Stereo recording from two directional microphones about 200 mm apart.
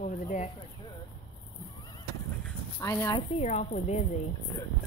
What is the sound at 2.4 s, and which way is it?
Speech, 10° left (ahead or behind).